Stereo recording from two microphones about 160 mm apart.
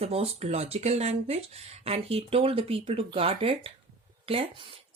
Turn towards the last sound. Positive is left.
turn(degrees=-35)  # may be behind; listen again after turning